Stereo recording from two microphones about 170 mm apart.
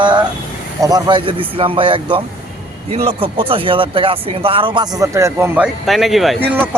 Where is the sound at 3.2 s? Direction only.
30° right (ahead or behind).